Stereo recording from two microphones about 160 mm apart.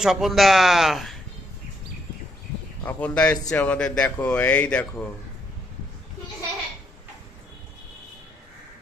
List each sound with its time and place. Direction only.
0.0 s speech: centre (ahead or behind)
2.8 s speech: 10° left (ahead or behind)